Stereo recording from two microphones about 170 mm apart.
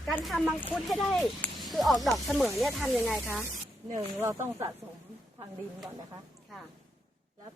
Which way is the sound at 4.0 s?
15° right (ahead or behind).